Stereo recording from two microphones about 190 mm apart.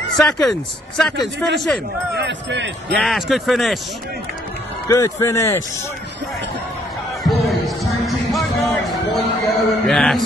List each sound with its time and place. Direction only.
0.1 s speech: centre (ahead or behind)
2.1 s speech: 70° right (ahead or behind)
2.9 s speech: centre (ahead or behind)
4.8 s a man's voice: 15° left (ahead or behind)
7.2 s music: centre (ahead or behind)